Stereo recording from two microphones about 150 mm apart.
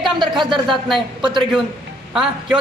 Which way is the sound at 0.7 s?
Centre (ahead or behind).